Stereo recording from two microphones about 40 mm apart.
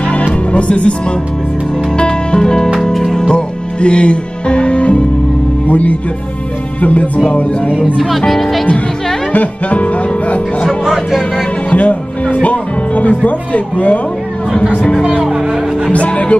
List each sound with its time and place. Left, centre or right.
0.5 s speech: left
2.0 s music: left
5.7 s speech: left
6.8 s music: left
7.2 s speech: left
8.3 s speech: centre
9.3 s speech: left
10.9 s speech: centre
11.7 s speech: left
15.9 s speech: left